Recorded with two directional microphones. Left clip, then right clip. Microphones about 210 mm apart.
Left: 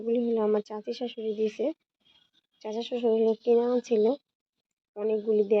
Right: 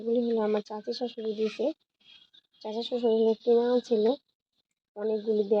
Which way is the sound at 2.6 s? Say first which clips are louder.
Even; 15° left (ahead or behind).